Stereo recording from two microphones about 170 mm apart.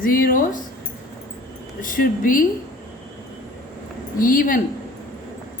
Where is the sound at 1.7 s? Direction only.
50° left (ahead or behind).